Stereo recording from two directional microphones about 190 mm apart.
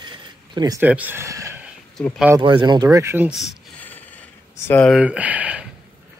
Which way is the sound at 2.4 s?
25° right (ahead or behind).